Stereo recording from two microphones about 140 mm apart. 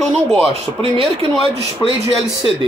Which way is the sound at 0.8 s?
40° right (ahead or behind).